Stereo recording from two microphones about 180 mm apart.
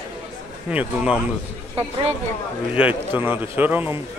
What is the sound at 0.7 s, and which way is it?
Speech, 5° right (ahead or behind).